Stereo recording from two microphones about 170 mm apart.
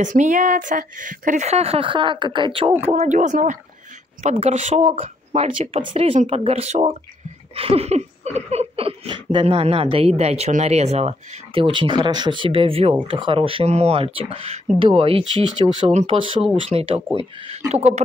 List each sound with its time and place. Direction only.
0.0 s speech: 50° right (ahead or behind); by 2.7 s 30° right (ahead or behind)
2.8 s speech: 40° right (ahead or behind)